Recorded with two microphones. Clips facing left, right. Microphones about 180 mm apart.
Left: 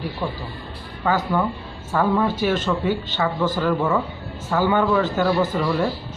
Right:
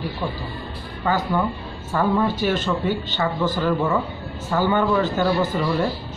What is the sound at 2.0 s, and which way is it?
Speech, centre (ahead or behind).